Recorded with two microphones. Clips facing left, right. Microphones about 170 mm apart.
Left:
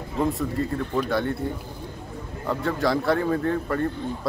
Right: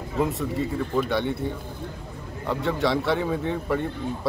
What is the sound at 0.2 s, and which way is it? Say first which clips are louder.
A man's voice: left 1 dB; centre (ahead or behind).